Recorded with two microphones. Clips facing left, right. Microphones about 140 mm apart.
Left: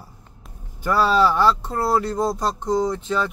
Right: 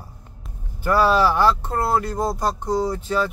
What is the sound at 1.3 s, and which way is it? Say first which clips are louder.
Speech: even; 55° right (ahead or behind).